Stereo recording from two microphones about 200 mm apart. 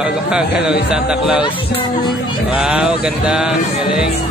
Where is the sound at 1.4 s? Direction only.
25° left (ahead or behind).